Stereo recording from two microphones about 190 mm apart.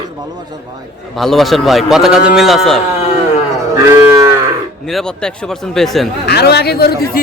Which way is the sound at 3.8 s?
15° right (ahead or behind).